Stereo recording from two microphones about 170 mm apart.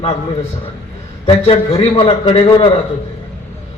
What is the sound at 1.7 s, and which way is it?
Speech, 30° left (ahead or behind).